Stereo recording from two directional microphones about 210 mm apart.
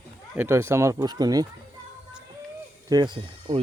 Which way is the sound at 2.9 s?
20° right (ahead or behind).